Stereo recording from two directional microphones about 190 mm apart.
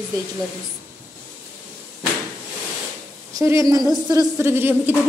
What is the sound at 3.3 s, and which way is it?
A woman's voice, 15° right (ahead or behind).